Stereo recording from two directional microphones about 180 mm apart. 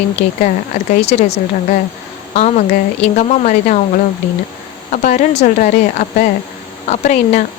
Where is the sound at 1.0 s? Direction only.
35° left (ahead or behind).